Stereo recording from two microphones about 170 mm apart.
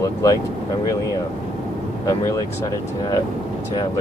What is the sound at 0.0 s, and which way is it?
Vehicle, 20° left (ahead or behind).